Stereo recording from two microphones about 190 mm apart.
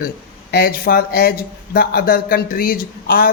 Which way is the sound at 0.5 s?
55° left (ahead or behind).